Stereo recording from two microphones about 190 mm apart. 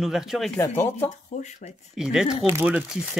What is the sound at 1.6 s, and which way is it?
Speech, 45° left (ahead or behind).